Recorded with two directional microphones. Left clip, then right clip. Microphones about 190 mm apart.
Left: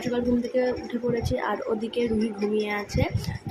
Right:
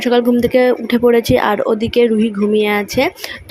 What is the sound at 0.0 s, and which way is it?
Speech, 45° right (ahead or behind).